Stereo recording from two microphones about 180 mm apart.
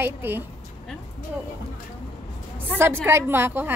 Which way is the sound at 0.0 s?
10° right (ahead or behind).